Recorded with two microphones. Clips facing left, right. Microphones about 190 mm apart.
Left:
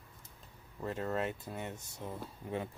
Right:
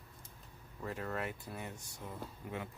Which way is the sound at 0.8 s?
25° left (ahead or behind).